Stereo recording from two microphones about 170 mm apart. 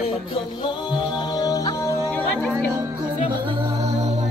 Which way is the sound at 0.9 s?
25° left (ahead or behind).